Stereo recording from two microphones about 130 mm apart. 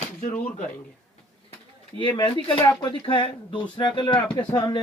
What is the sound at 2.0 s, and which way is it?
Speech, 40° left (ahead or behind).